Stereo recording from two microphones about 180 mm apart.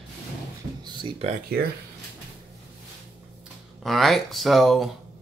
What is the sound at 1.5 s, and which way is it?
Speech, 60° right (ahead or behind).